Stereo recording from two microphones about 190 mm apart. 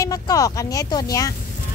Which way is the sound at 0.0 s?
20° left (ahead or behind).